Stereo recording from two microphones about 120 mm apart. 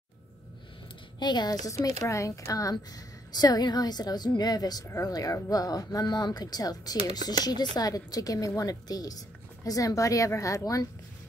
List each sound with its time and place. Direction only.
1.2 s a woman's voice: 35° left (ahead or behind)